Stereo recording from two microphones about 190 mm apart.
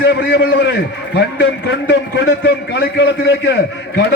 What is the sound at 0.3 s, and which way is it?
A man's voice, 60° left (ahead or behind).